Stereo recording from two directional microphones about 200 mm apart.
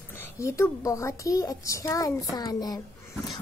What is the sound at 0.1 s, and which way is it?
A child's voice, 15° left (ahead or behind).